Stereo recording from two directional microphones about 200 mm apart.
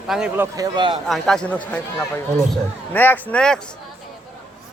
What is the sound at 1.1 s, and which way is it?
A man's voice, centre (ahead or behind).